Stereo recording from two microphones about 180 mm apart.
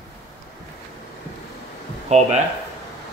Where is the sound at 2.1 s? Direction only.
40° right (ahead or behind).